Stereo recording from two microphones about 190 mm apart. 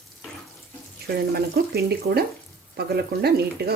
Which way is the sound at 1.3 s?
55° right (ahead or behind).